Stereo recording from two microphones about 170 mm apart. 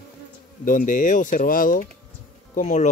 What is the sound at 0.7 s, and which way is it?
A man's voice, 50° left (ahead or behind).